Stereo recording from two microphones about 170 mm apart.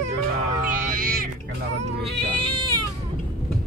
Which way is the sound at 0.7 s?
55° right (ahead or behind).